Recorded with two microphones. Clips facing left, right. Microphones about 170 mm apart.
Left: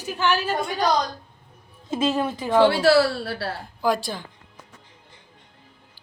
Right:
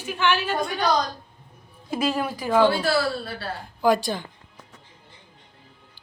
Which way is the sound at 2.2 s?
25° left (ahead or behind).